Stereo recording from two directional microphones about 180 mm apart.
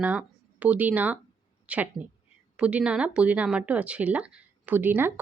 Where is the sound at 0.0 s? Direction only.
10° right (ahead or behind).